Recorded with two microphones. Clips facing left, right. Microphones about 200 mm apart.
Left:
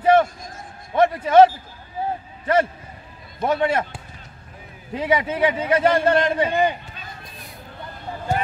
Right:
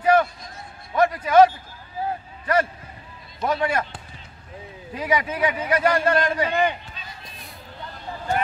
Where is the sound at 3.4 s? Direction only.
25° left (ahead or behind).